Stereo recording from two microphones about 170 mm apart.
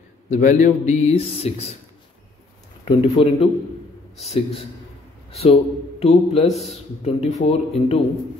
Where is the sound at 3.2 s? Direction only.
30° left (ahead or behind).